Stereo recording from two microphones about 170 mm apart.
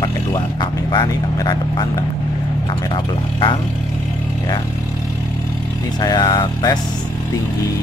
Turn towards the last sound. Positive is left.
turn(degrees=25)  # may be behind; listen again after turning